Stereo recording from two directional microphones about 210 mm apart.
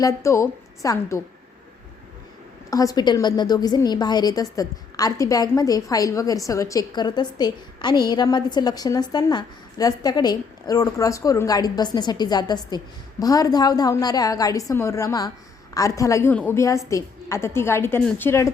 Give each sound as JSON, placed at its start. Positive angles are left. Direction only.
{"t": 0.0, "sound": "a woman's voice", "side_deg": 15}
{"t": 2.6, "sound": "a woman's voice", "side_deg": 15}